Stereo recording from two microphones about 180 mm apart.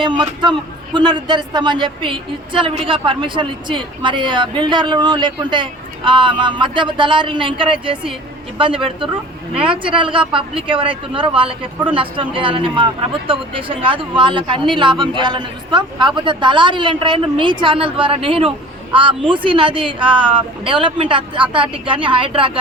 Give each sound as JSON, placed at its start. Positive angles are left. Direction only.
{"t": 0.0, "sound": "speech", "side_deg": -25}